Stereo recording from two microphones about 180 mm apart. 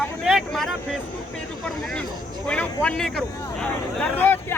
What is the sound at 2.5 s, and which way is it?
Speech, 5° left (ahead or behind).